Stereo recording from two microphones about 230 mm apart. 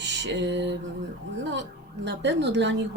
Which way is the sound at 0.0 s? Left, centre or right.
Right.